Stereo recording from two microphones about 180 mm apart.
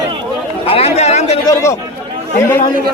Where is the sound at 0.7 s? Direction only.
35° left (ahead or behind).